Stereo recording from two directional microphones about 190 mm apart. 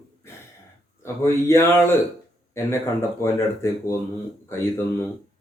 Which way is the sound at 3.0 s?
15° left (ahead or behind).